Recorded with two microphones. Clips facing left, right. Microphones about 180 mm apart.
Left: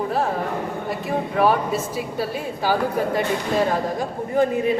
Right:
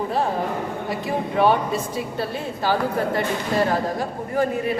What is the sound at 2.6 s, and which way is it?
Speech, 15° left (ahead or behind).